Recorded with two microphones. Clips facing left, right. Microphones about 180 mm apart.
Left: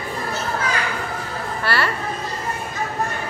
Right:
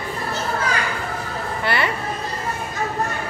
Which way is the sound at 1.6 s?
20° right (ahead or behind).